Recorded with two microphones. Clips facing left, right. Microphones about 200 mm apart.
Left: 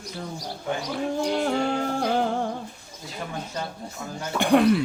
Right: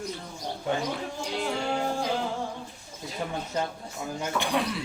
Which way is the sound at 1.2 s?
55° left (ahead or behind).